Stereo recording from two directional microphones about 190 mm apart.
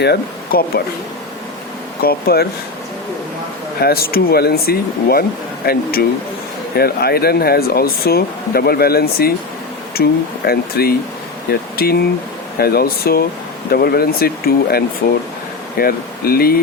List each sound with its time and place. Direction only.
0.0 s speech: 55° left (ahead or behind)
2.0 s speech: 55° left (ahead or behind)
3.8 s speech: 55° left (ahead or behind)